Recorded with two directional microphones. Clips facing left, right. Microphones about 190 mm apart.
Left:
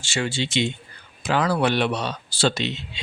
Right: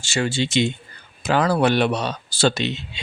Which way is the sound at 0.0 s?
45° right (ahead or behind).